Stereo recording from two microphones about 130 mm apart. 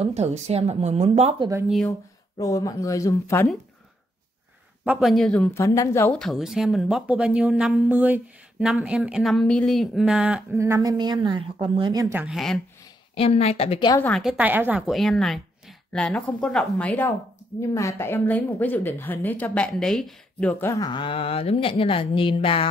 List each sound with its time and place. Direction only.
0.0 s a woman's voice: 55° right (ahead or behind)
1.9 s speech: 25° left (ahead or behind)
4.8 s speech: centre (ahead or behind)
5.5 s speech: 20° left (ahead or behind)
6.1 s speech: centre (ahead or behind)
10.5 s a woman's voice: 25° right (ahead or behind); by 11.9 s 40° right (ahead or behind)
11.9 s speech: 25° right (ahead or behind)
12.3 s speech: centre (ahead or behind)
13.1 s speech: 50° left (ahead or behind)
14.1 s a woman's voice: 5° right (ahead or behind); by 17.1 s 10° left (ahead or behind)
17.6 s a woman's voice: 25° left (ahead or behind); by 20.5 s centre (ahead or behind)
20.6 s speech: 25° left (ahead or behind)
20.9 s speech: 40° left (ahead or behind)